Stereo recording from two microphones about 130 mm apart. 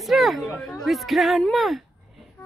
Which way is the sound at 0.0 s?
Centre (ahead or behind).